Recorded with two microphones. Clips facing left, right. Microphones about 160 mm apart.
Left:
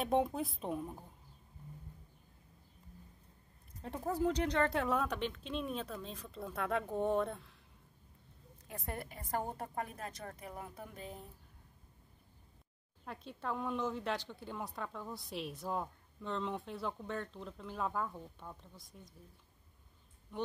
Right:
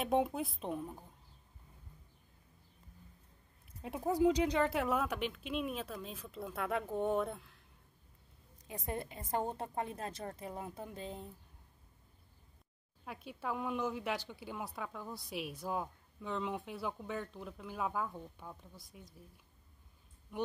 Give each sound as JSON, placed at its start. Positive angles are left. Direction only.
{"t": 0.0, "sound": "speech", "side_deg": 0}
{"t": 3.8, "sound": "speech", "side_deg": -10}
{"t": 8.6, "sound": "a woman's voice", "side_deg": -20}
{"t": 13.0, "sound": "speech", "side_deg": -5}